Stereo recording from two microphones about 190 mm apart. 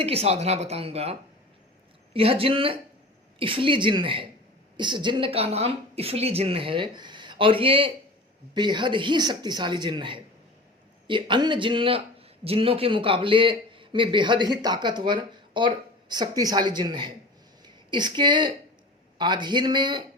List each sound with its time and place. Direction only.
0.0 s speech: 30° right (ahead or behind)
2.1 s a man's voice: 30° right (ahead or behind)